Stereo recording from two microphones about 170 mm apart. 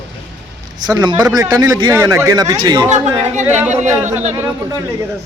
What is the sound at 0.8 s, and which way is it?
Speech, 25° right (ahead or behind).